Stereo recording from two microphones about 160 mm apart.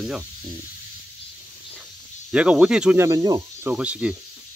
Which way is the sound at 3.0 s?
20° right (ahead or behind).